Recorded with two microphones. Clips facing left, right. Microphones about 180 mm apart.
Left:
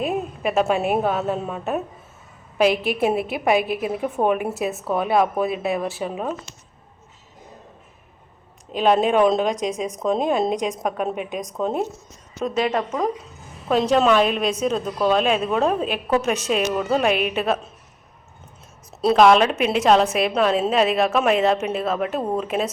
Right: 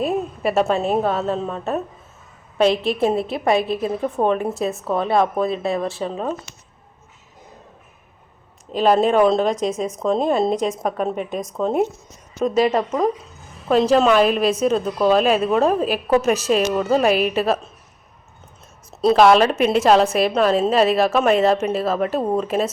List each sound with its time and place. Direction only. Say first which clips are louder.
0.0 s a woman's voice: right 2 dB; centre (ahead or behind)
2.6 s a woman's voice: right 2 dB; 30° right (ahead or behind)
3.0 s a woman's voice: right 2 dB; 5° left (ahead or behind)
3.6 s a woman's voice: right 2 dB; 30° right (ahead or behind)
3.8 s a woman's voice: right 1 dB; 10° left (ahead or behind)
8.8 s a woman's voice: right 2 dB; 5° left (ahead or behind)
9.4 s a woman's voice: right 2 dB; 15° left (ahead or behind)
9.9 s a woman's voice: right 1 dB; centre (ahead or behind)
18.9 s a woman's voice: right 1 dB; centre (ahead or behind)